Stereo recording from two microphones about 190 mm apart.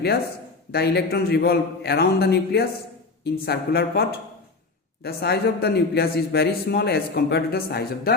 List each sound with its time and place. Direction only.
0.7 s a man's voice: 60° left (ahead or behind)
5.0 s a man's voice: 55° left (ahead or behind)